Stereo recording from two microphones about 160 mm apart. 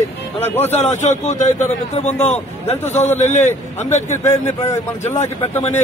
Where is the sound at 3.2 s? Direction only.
45° left (ahead or behind).